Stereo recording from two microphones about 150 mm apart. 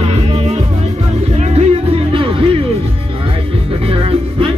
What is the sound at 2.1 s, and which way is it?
Music, 35° right (ahead or behind).